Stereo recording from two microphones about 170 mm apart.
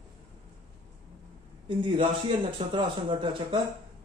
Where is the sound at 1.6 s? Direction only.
30° right (ahead or behind).